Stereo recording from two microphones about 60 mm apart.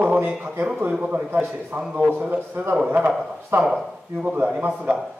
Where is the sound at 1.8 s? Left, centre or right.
Right.